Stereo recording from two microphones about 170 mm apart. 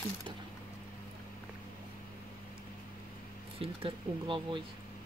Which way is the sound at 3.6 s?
30° right (ahead or behind).